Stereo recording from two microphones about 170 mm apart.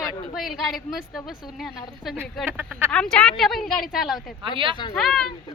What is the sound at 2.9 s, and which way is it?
Speech, 5° left (ahead or behind).